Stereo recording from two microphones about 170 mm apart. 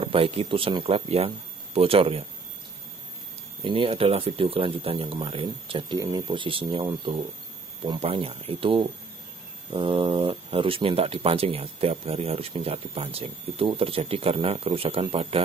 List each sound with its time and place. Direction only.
0.0 s speech: 35° right (ahead or behind)
3.6 s speech: 30° right (ahead or behind)